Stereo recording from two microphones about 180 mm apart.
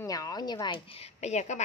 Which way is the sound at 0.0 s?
20° left (ahead or behind).